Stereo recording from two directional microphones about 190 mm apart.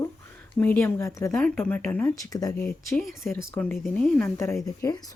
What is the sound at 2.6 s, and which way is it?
Speech, 5° left (ahead or behind).